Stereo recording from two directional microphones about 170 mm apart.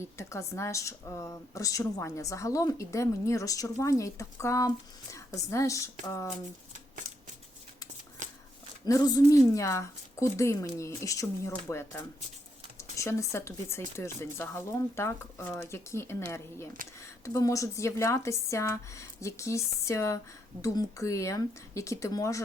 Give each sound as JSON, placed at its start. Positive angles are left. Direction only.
{"t": 0.0, "sound": "speech", "side_deg": 15}
{"t": 8.9, "sound": "speech", "side_deg": 20}